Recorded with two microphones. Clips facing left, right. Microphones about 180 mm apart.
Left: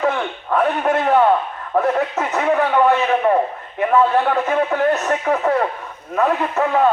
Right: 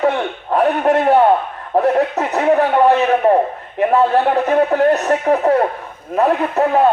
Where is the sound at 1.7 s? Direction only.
35° right (ahead or behind).